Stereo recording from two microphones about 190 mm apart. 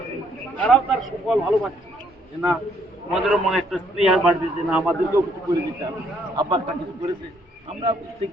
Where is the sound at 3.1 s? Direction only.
Centre (ahead or behind).